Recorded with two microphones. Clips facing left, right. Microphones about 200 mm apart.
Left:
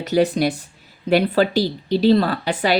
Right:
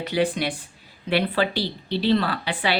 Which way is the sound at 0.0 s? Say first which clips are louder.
Left 6 dB; 40° left (ahead or behind).